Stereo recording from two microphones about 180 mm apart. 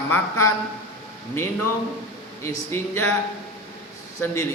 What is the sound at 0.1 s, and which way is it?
Speech, 15° left (ahead or behind).